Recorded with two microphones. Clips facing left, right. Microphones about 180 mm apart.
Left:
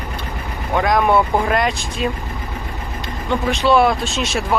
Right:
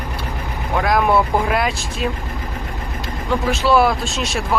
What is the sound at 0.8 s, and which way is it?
Speech, 5° right (ahead or behind).